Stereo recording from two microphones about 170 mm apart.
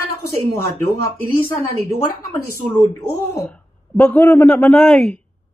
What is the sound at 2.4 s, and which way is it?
A man's voice, 15° left (ahead or behind).